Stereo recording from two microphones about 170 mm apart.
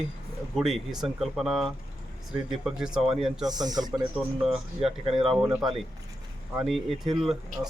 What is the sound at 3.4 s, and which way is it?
Speech, 25° right (ahead or behind).